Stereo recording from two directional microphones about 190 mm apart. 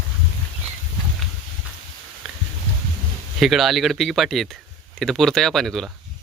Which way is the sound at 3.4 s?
Centre (ahead or behind).